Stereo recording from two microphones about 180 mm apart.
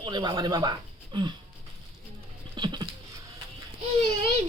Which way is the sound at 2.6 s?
25° right (ahead or behind).